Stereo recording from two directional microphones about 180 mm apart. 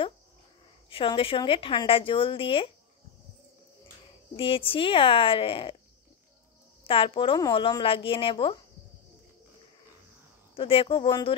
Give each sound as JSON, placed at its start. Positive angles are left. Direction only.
{"t": 0.8, "sound": "a woman's voice", "side_deg": 30}
{"t": 4.4, "sound": "a woman's voice", "side_deg": 30}
{"t": 6.9, "sound": "a woman's voice", "side_deg": 30}
{"t": 10.5, "sound": "a woman's voice", "side_deg": 30}